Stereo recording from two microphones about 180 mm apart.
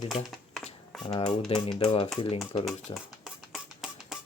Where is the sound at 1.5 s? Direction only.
30° left (ahead or behind).